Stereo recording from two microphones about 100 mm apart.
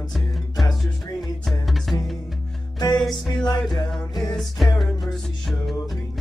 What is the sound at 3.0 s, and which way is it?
Music, centre (ahead or behind).